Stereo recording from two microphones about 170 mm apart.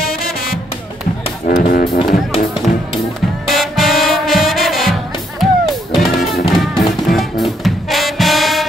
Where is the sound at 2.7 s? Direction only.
50° left (ahead or behind).